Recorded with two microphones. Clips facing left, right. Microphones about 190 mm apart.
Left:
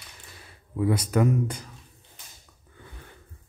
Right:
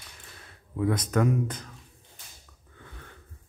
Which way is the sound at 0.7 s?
5° left (ahead or behind).